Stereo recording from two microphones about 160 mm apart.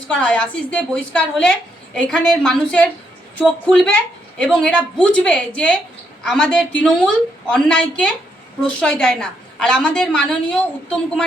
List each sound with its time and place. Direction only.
0.1 s a woman's voice: 5° left (ahead or behind)